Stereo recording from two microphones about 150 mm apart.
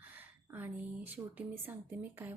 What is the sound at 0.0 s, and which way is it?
A woman's voice, 10° right (ahead or behind).